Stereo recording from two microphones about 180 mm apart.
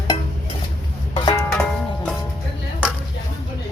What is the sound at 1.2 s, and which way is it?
Music, 20° left (ahead or behind).